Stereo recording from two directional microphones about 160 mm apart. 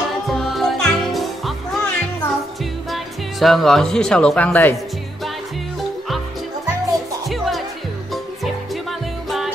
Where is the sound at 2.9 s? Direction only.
Centre (ahead or behind).